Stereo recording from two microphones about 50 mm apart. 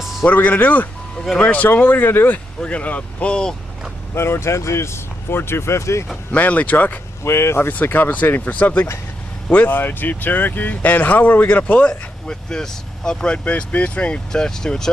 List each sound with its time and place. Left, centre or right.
0.3 s speech: left
2.6 s speech: left
4.1 s speech: left
5.3 s speech: left
6.3 s speech: left
7.2 s speech: left
7.7 s speech: left
11.9 s speech: centre
13.4 s speech: left; by 14.9 s centre